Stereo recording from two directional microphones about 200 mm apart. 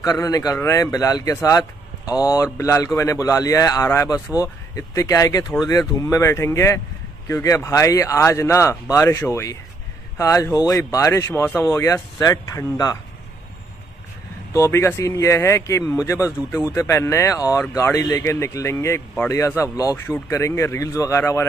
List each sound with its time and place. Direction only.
0.0 s speech: 20° left (ahead or behind)
14.5 s speech: 15° left (ahead or behind)